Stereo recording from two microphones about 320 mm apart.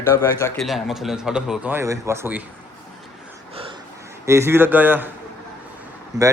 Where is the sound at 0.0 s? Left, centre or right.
Centre.